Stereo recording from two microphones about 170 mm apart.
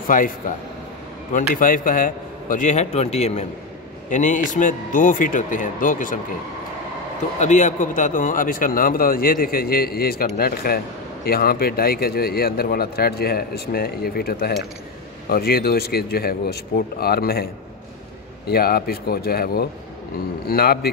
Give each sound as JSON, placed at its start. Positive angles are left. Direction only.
{"t": 0.1, "sound": "a man's voice", "side_deg": 55}
{"t": 1.5, "sound": "a man's voice", "side_deg": 55}
{"t": 7.3, "sound": "a man's voice", "side_deg": 45}
{"t": 18.5, "sound": "a man's voice", "side_deg": 65}